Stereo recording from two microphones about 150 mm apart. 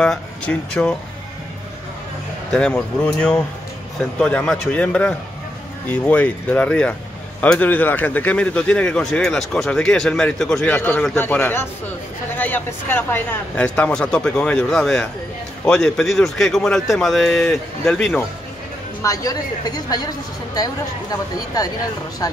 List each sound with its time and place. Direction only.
0.0 s speech: 5° left (ahead or behind)
2.5 s speech: 5° left (ahead or behind)
19.0 s a woman's voice: 25° left (ahead or behind)
22.2 s speech: 25° left (ahead or behind)